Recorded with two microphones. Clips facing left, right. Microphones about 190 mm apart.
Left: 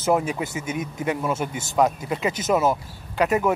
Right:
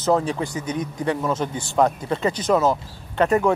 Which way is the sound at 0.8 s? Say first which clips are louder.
Right 2 dB; 25° left (ahead or behind).